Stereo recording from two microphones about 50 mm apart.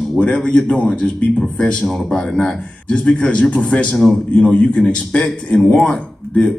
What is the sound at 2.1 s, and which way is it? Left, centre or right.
A man's voice, centre.